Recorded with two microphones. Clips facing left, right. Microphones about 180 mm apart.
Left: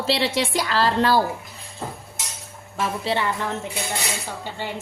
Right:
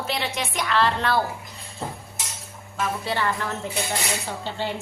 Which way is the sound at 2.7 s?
25° left (ahead or behind).